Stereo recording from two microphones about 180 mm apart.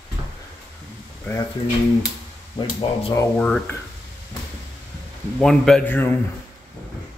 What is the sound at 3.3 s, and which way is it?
Speech, 5° left (ahead or behind).